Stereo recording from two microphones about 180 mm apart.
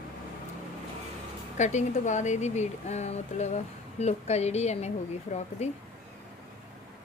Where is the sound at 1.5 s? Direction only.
40° left (ahead or behind).